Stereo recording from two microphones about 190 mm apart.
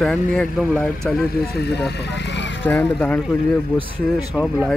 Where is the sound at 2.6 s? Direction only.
5° left (ahead or behind).